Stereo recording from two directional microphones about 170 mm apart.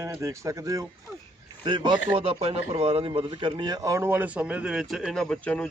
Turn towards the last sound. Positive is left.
turn(degrees=5)  # may be behind; listen again after turning